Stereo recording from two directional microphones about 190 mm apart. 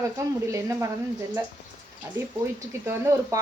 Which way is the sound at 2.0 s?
15° right (ahead or behind).